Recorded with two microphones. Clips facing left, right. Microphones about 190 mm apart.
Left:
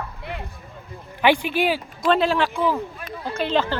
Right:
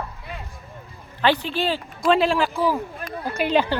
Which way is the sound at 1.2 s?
10° left (ahead or behind).